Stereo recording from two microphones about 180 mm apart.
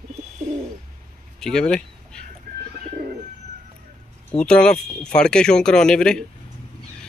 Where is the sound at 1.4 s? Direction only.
5° left (ahead or behind).